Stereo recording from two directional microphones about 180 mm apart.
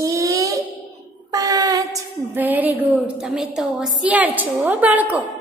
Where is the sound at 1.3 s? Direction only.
20° right (ahead or behind).